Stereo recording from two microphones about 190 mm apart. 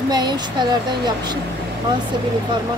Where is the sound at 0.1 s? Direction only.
20° right (ahead or behind).